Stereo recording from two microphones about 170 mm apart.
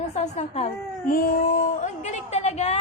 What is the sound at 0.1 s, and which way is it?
A woman's voice, 40° left (ahead or behind).